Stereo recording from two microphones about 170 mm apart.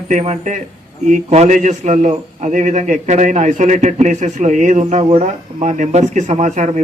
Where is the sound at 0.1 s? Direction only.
45° right (ahead or behind).